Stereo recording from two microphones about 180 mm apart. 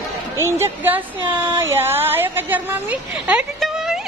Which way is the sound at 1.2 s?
25° right (ahead or behind).